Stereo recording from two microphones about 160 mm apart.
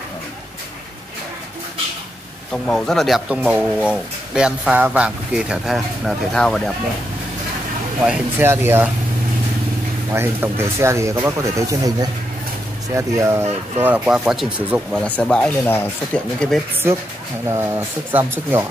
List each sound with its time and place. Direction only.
2.5 s speech: 5° left (ahead or behind)
8.0 s speech: 10° right (ahead or behind)
10.1 s speech: 15° right (ahead or behind); by 16.6 s 5° left (ahead or behind)
17.5 s speech: 15° right (ahead or behind)